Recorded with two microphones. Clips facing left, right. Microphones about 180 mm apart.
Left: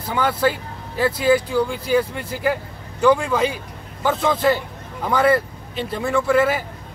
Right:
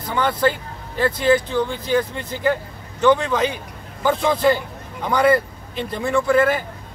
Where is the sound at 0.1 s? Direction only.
5° left (ahead or behind).